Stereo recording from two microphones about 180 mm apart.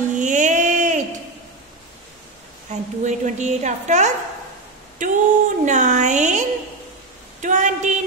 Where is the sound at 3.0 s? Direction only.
40° right (ahead or behind).